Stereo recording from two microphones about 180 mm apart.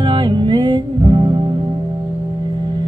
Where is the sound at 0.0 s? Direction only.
25° right (ahead or behind).